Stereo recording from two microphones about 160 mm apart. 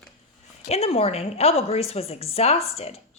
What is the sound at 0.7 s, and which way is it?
A woman's voice, 40° left (ahead or behind).